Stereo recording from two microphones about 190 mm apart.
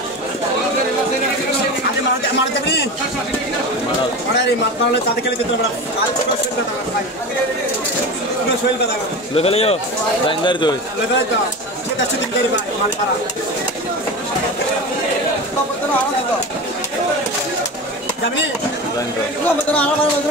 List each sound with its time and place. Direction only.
9.3 s speech: 30° left (ahead or behind)